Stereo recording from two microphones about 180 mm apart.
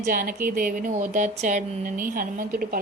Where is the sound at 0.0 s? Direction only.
50° right (ahead or behind).